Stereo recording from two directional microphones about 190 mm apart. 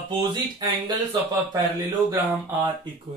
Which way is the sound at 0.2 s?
25° right (ahead or behind).